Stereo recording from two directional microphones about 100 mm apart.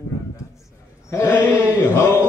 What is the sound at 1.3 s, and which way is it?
Speech, 20° left (ahead or behind).